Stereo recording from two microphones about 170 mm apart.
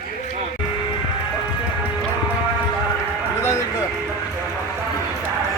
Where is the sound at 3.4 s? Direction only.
15° left (ahead or behind).